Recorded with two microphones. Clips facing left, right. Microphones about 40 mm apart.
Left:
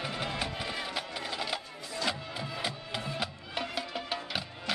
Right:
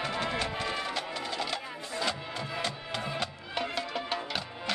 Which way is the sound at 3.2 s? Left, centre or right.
Centre.